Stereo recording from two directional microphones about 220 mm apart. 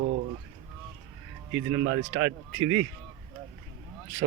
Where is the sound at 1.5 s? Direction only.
40° right (ahead or behind).